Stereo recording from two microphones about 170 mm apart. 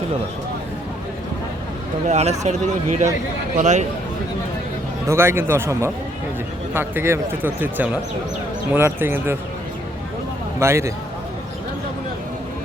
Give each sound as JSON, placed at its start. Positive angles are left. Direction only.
{"t": 2.0, "sound": "a man's voice", "side_deg": -40}
{"t": 5.0, "sound": "speech", "side_deg": -15}
{"t": 10.6, "sound": "speech", "side_deg": -15}